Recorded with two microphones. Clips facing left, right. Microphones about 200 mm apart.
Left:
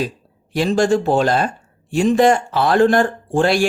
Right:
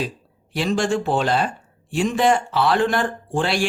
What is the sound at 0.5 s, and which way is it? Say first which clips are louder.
Speech: left 5 dB; 40° left (ahead or behind).